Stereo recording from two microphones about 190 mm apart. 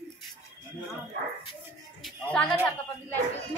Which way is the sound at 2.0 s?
5° left (ahead or behind).